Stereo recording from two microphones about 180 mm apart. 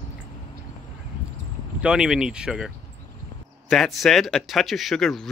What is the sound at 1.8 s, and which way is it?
Speech, 5° right (ahead or behind).